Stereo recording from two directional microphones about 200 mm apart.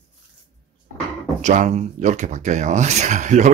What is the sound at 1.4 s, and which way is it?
A woman's voice, 40° right (ahead or behind).